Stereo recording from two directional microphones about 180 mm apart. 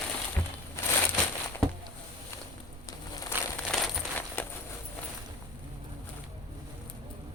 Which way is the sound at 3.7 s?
5° left (ahead or behind).